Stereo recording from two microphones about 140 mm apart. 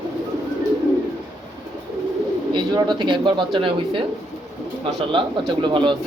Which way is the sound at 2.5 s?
35° right (ahead or behind).